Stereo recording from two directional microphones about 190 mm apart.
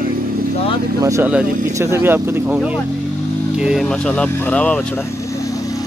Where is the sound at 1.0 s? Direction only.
10° right (ahead or behind); by 5.0 s 5° left (ahead or behind).